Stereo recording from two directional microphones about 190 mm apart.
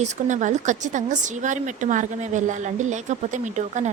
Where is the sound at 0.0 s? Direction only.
40° right (ahead or behind).